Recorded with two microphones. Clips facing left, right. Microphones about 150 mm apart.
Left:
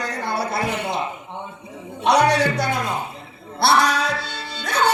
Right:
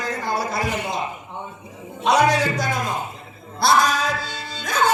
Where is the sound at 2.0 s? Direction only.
65° left (ahead or behind).